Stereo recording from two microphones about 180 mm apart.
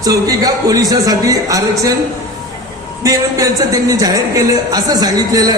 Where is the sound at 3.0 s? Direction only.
20° right (ahead or behind).